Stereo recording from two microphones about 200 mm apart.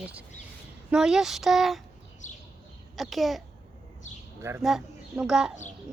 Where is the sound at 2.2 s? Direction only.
40° left (ahead or behind).